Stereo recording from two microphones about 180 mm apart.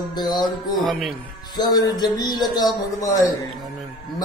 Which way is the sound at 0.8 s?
Centre (ahead or behind).